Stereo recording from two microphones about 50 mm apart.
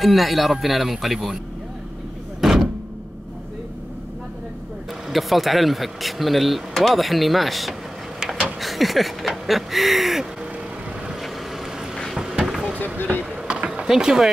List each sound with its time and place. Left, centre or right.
0.0 s speech: centre
2.4 s vehicle: centre
5.1 s speech: centre
11.9 s boat: centre
12.2 s boat: centre
12.7 s a sound: left
13.2 s a sound: right
13.8 s speech: centre